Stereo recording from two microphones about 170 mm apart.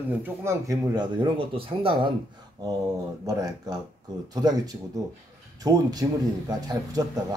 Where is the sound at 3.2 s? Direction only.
20° right (ahead or behind).